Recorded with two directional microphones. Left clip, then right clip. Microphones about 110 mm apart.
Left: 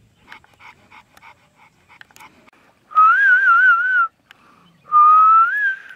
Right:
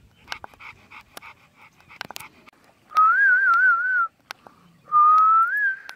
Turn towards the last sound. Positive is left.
turn(degrees=25)  # may be behind; listen again after turning